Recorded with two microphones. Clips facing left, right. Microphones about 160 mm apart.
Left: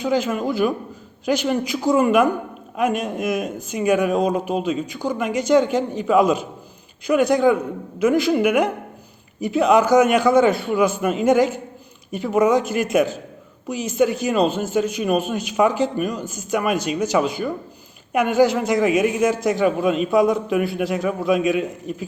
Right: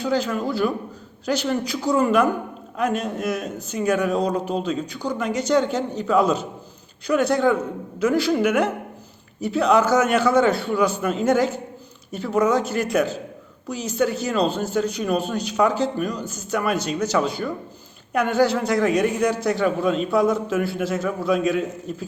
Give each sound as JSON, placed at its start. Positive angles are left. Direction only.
{"t": 0.0, "sound": "a man's voice", "side_deg": 15}